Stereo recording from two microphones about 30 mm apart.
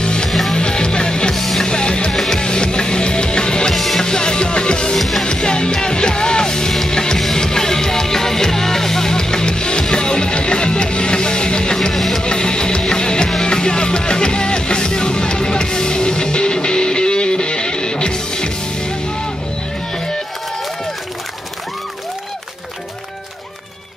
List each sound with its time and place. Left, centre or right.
0.0 s music: left
1.3 s music: centre
1.6 s music: left
2.1 s music: centre
3.7 s music: centre
4.0 s music: left
4.9 s music: centre
5.2 s music: left
11.9 s music: centre
12.2 s music: left